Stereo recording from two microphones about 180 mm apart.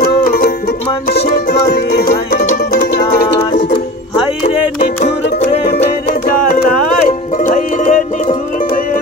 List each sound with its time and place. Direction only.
0.0 s music: 55° left (ahead or behind)
4.7 s music: 55° left (ahead or behind)